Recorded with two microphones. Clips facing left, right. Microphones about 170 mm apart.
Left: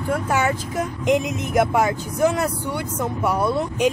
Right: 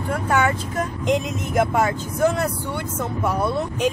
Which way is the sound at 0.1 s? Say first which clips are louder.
Even; 5° left (ahead or behind).